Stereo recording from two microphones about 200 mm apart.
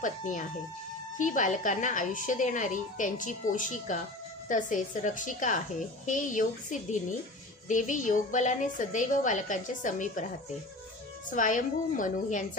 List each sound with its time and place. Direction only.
0.0 s speech: 40° left (ahead or behind)
11.2 s speech: 40° left (ahead or behind)